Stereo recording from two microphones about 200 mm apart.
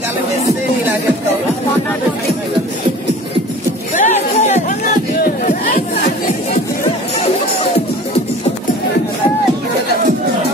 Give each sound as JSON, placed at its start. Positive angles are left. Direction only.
{"t": 3.9, "sound": "chatter", "side_deg": 35}
{"t": 5.2, "sound": "beatboxing", "side_deg": 45}